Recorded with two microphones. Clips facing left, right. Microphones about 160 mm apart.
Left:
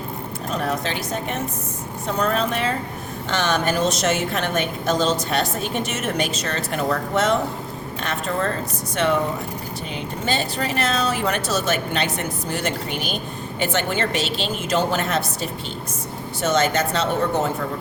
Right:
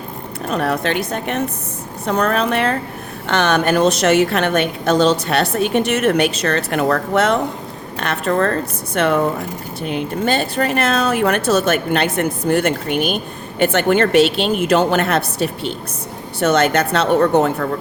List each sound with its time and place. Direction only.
0.4 s speech: 65° right (ahead or behind)